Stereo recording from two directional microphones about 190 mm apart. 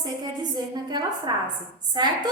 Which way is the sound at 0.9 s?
20° right (ahead or behind).